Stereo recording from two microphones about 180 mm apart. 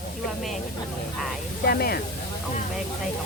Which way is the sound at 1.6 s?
60° left (ahead or behind).